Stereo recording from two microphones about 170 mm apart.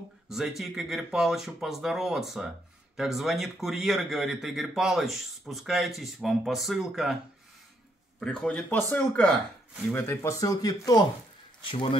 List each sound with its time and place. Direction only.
0.3 s speech: centre (ahead or behind)
8.2 s speech: 5° left (ahead or behind); by 11.1 s 20° left (ahead or behind)
11.7 s speech: 30° left (ahead or behind)